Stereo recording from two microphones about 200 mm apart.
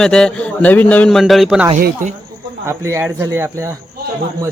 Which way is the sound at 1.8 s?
45° right (ahead or behind).